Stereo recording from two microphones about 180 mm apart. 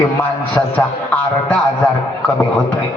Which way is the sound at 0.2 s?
10° left (ahead or behind).